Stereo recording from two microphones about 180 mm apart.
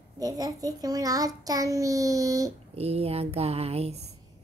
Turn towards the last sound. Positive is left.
turn(degrees=-35)  # may be behind; listen again after turning